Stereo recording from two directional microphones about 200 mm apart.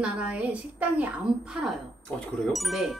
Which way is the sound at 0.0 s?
5° right (ahead or behind).